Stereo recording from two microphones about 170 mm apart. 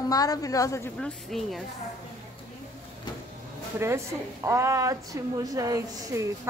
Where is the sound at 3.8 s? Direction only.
15° right (ahead or behind).